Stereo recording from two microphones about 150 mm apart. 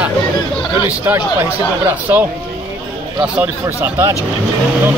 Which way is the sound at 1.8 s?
15° right (ahead or behind).